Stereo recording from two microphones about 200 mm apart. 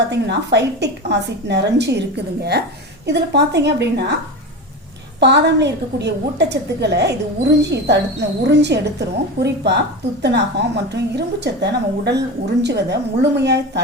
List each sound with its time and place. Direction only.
0.1 s a woman's voice: 60° right (ahead or behind)
5.2 s a woman's voice: 60° right (ahead or behind)